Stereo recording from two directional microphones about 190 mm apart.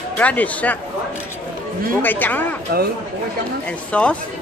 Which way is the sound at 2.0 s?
10° left (ahead or behind).